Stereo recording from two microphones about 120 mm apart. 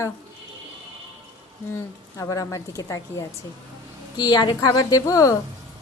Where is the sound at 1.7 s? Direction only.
25° left (ahead or behind).